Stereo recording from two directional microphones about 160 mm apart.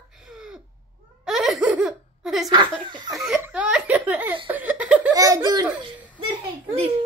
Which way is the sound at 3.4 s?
10° right (ahead or behind).